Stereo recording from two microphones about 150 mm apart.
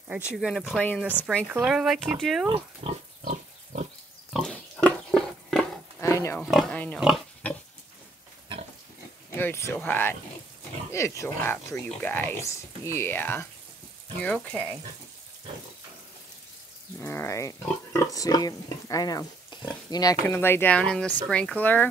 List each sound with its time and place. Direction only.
0.4 s speech: centre (ahead or behind)
0.8 s speech: 10° left (ahead or behind)
1.5 s speech: 10° right (ahead or behind)
2.5 s pig: 45° right (ahead or behind)
4.3 s pig: 5° left (ahead or behind)
5.9 s pig: 20° left (ahead or behind)
6.4 s speech: centre (ahead or behind)
6.7 s pig: 10° left (ahead or behind)
9.3 s speech: 15° left (ahead or behind)
17.0 s speech: 15° left (ahead or behind)
20.2 s speech: 15° left (ahead or behind)